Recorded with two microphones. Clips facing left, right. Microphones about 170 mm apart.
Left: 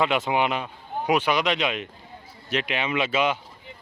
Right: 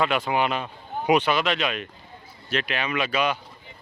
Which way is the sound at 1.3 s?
20° left (ahead or behind).